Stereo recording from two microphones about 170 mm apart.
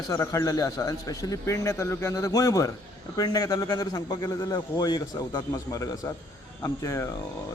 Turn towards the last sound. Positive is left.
turn(degrees=15)  # may be behind; listen again after turning